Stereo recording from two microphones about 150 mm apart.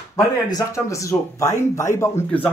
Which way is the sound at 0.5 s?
20° left (ahead or behind).